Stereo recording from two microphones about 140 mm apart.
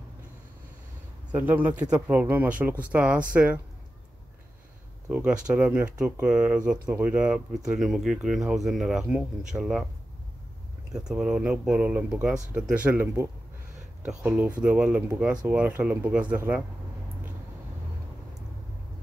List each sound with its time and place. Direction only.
1.3 s speech: 10° right (ahead or behind)
5.1 s speech: 10° right (ahead or behind)
10.9 s speech: 5° right (ahead or behind)